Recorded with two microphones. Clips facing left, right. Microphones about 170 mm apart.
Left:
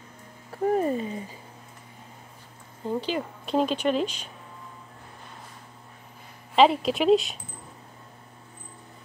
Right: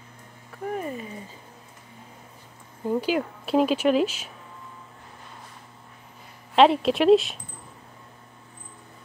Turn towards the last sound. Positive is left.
turn(degrees=0)  # may be behind; listen again after turning